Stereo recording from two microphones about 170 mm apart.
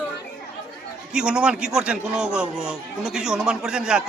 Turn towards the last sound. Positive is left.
turn(degrees=-5)  # may be behind; listen again after turning